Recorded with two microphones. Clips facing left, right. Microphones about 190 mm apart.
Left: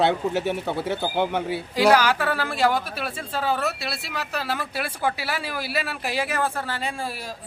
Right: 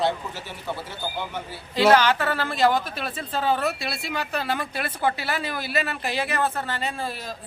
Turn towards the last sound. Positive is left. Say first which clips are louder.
# even
turn(degrees=10)  # may be behind; listen again after turning